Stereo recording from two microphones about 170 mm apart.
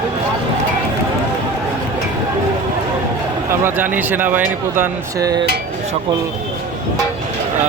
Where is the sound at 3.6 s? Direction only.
10° right (ahead or behind).